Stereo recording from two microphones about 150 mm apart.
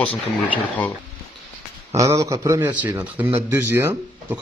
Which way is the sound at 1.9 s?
20° right (ahead or behind).